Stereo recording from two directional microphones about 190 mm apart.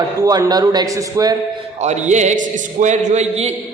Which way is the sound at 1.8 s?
35° right (ahead or behind).